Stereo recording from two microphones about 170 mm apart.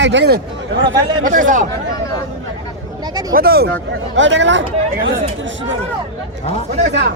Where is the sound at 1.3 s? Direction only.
50° right (ahead or behind).